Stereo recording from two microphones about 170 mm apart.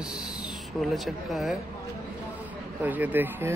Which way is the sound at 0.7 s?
Centre (ahead or behind).